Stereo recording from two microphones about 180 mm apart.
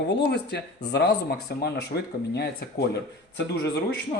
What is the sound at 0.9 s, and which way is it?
Speech, 65° left (ahead or behind).